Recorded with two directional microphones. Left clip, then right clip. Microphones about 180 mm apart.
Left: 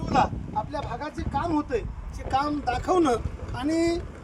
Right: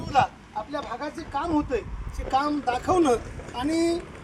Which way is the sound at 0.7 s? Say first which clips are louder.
Right 1 dB; 15° right (ahead or behind).